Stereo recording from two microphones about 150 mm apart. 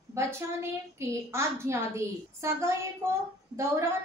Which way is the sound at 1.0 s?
20° right (ahead or behind).